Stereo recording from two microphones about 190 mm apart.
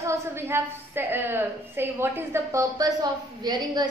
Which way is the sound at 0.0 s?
15° right (ahead or behind).